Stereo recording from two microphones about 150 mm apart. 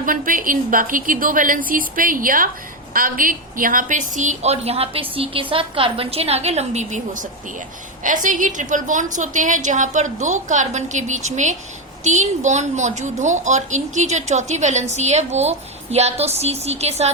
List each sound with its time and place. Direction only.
0.0 s a woman's voice: 65° right (ahead or behind); by 17.1 s 45° right (ahead or behind)